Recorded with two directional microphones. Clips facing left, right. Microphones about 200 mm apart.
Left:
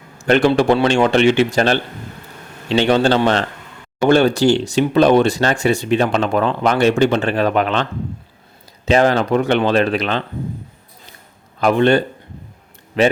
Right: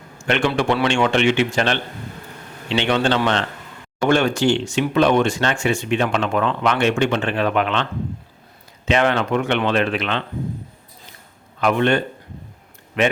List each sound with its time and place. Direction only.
0.2 s speech: 35° left (ahead or behind)
11.6 s speech: 35° left (ahead or behind)